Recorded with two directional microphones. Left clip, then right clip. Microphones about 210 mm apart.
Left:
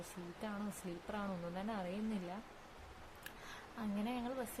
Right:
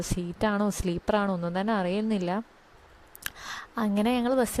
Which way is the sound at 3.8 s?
50° right (ahead or behind).